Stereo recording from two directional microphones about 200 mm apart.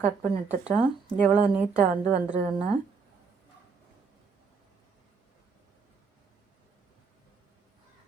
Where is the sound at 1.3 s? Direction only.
5° right (ahead or behind).